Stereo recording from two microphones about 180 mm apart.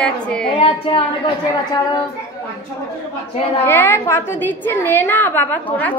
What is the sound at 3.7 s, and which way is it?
A woman's voice, 10° left (ahead or behind).